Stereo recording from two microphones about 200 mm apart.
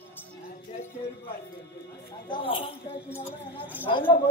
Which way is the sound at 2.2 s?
25° left (ahead or behind).